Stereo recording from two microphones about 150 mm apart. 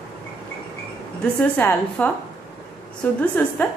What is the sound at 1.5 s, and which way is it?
A woman's voice, 10° left (ahead or behind).